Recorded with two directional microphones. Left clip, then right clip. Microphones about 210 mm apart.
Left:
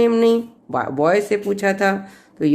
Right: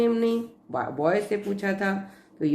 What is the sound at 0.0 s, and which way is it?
Speech, 40° left (ahead or behind).